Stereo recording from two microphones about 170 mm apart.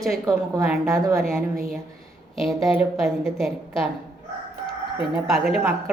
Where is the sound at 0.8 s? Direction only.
15° right (ahead or behind).